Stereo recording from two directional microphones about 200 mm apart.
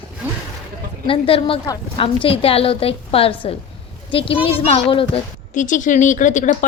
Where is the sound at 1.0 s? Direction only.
25° left (ahead or behind).